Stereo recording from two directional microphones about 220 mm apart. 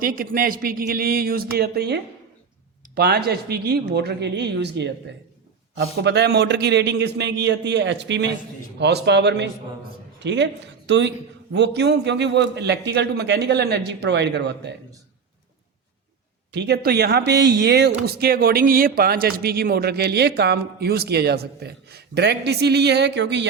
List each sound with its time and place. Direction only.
0.0 s speech: 40° right (ahead or behind)
16.5 s speech: 50° right (ahead or behind)